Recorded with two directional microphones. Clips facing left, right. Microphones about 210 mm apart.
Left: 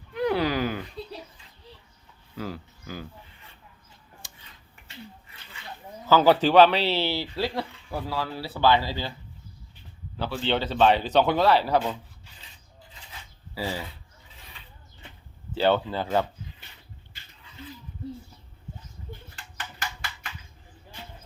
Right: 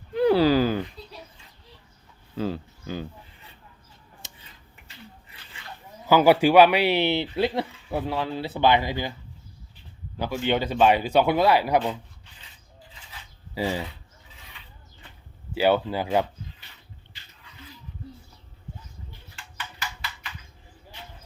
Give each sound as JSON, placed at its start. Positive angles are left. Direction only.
{"t": 0.1, "sound": "a sound", "side_deg": -30}
{"t": 2.3, "sound": "speech", "side_deg": -25}
{"t": 4.2, "sound": "a sound", "side_deg": -25}
{"t": 6.1, "sound": "speech", "side_deg": -10}
{"t": 10.2, "sound": "speech", "side_deg": -15}
{"t": 13.5, "sound": "speech", "side_deg": -20}
{"t": 15.5, "sound": "speech", "side_deg": -10}